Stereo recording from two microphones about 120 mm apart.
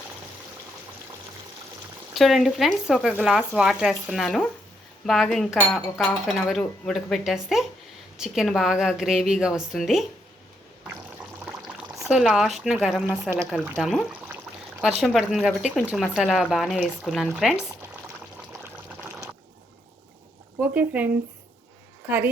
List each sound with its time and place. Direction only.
2.1 s speech: centre (ahead or behind)
12.0 s speech: 5° right (ahead or behind)
18.6 s boiling: 20° right (ahead or behind)
20.7 s speech: 15° right (ahead or behind)